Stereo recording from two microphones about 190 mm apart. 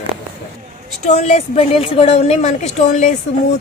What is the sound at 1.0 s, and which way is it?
A woman's voice, 35° left (ahead or behind).